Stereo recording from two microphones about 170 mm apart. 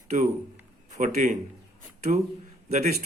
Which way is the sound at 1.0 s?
45° right (ahead or behind).